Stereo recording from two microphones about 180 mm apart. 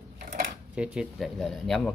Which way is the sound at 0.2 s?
50° right (ahead or behind).